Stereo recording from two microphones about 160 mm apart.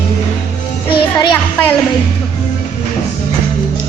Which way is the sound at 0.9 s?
30° left (ahead or behind).